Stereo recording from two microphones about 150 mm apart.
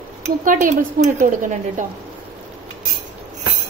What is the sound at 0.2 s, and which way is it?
Speech, 60° right (ahead or behind).